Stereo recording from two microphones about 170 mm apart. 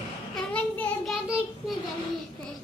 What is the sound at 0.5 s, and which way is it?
Child singing, 5° left (ahead or behind).